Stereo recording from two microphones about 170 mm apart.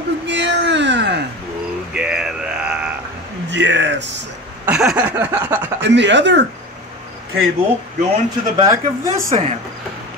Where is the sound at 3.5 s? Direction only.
90° right.